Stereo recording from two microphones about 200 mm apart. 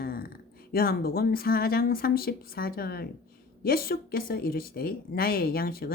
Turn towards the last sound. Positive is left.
turn(degrees=50)  # may be behind; listen again after turning